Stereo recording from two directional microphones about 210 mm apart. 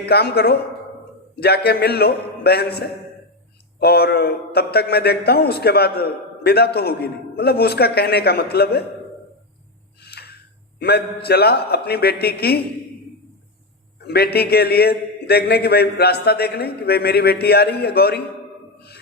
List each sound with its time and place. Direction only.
0.0 s a man's voice: 50° left (ahead or behind)
10.0 s a sound: 50° left (ahead or behind)
10.8 s a man's voice: 50° left (ahead or behind)
14.1 s a man's voice: 50° left (ahead or behind)